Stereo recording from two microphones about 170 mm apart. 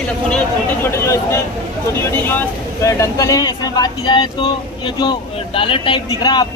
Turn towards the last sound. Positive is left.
turn(degrees=25)  # may be behind; listen again after turning